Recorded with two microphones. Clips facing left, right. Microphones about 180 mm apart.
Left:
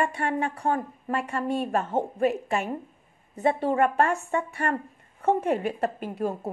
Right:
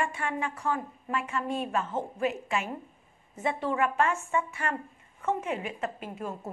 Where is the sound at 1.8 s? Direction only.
55° left (ahead or behind).